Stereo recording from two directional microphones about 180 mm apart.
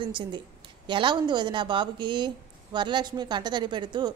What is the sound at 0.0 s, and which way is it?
Speech, 25° right (ahead or behind).